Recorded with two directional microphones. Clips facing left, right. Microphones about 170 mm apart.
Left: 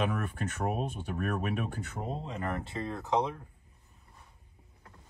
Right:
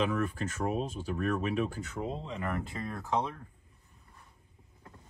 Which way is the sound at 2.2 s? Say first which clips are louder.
Even; 40° left (ahead or behind).